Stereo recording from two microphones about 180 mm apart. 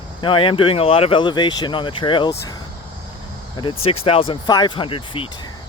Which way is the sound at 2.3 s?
15° left (ahead or behind).